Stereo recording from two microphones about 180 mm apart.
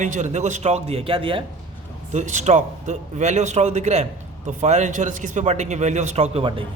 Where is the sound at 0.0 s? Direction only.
40° right (ahead or behind).